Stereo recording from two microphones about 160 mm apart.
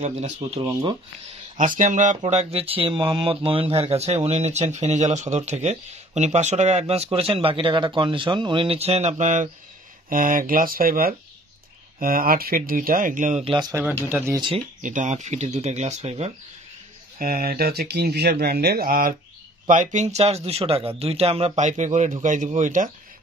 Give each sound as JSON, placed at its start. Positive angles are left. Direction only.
{"t": 0.0, "sound": "speech", "side_deg": -45}
{"t": 1.6, "sound": "speech", "side_deg": -55}
{"t": 10.0, "sound": "speech", "side_deg": -60}
{"t": 13.4, "sound": "speech", "side_deg": -35}
{"t": 13.8, "sound": "speech", "side_deg": -10}
{"t": 14.8, "sound": "speech", "side_deg": -50}
{"t": 17.2, "sound": "speech", "side_deg": -65}
{"t": 19.7, "sound": "speech", "side_deg": -50}